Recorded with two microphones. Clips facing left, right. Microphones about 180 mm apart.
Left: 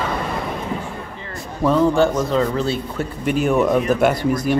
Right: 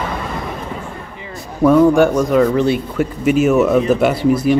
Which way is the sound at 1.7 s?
10° right (ahead or behind).